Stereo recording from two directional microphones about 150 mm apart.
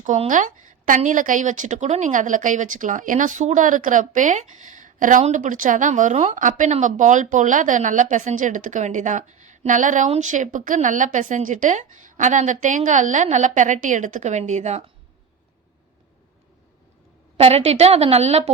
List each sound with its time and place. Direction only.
0.0 s a woman's voice: 55° right (ahead or behind)
17.3 s a woman's voice: 45° right (ahead or behind)